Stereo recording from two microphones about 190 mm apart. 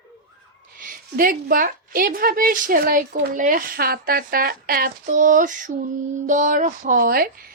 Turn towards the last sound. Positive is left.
turn(degrees=-50)  # may be behind; listen again after turning